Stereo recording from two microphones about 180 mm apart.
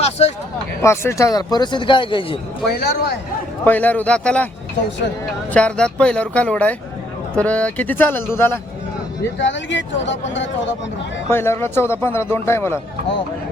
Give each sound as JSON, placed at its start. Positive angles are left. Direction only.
{"t": 0.0, "sound": "a sound", "side_deg": 40}
{"t": 0.8, "sound": "speech", "side_deg": 15}
{"t": 2.6, "sound": "speech", "side_deg": 65}
{"t": 3.6, "sound": "a man's voice", "side_deg": 10}
{"t": 5.5, "sound": "a man's voice", "side_deg": 5}
{"t": 9.4, "sound": "speech", "side_deg": 90}
{"t": 11.3, "sound": "a man's voice", "side_deg": 15}